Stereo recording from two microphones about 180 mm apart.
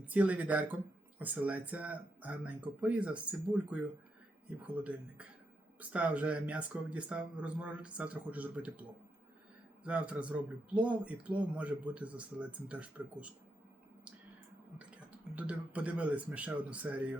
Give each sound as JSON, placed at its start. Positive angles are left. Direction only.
{"t": 0.0, "sound": "speech", "side_deg": -10}
{"t": 9.8, "sound": "speech", "side_deg": -5}
{"t": 15.4, "sound": "speech", "side_deg": -5}